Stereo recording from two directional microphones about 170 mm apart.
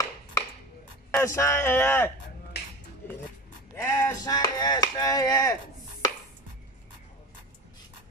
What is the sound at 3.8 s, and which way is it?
Chop, 20° left (ahead or behind).